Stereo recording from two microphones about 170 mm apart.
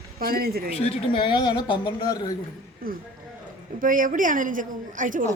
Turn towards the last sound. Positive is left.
turn(degrees=-50)  # may be behind; listen again after turning